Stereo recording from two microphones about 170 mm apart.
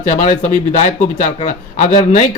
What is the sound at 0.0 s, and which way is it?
Speech, 45° left (ahead or behind).